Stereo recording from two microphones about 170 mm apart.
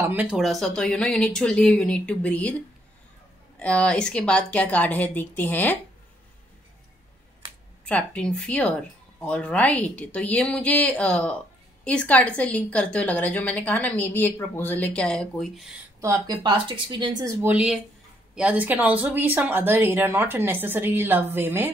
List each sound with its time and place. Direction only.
0.0 s speech: 10° right (ahead or behind); by 2.5 s 10° left (ahead or behind)
3.5 s a woman's voice: 5° left (ahead or behind)
7.8 s a woman's voice: 5° left (ahead or behind)
16.0 s speech: 20° right (ahead or behind)
17.4 s speech: 10° right (ahead or behind)